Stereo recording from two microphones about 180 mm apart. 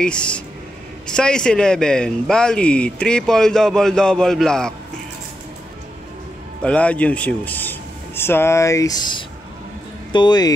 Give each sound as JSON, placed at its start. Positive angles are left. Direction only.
{"t": 0.0, "sound": "speech", "side_deg": 5}
{"t": 6.6, "sound": "speech", "side_deg": 5}